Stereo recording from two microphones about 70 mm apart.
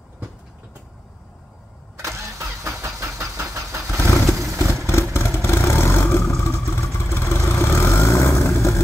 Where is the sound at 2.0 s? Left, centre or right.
Right.